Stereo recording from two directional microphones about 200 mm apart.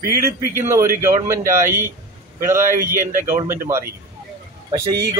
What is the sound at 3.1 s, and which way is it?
Speech, 40° right (ahead or behind).